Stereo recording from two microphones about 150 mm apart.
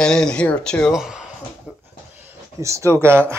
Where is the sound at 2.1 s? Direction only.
15° right (ahead or behind).